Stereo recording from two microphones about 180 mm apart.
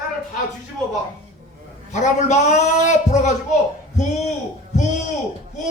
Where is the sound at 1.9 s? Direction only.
40° left (ahead or behind).